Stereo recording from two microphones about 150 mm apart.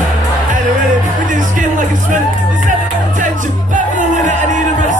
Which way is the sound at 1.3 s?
60° right (ahead or behind).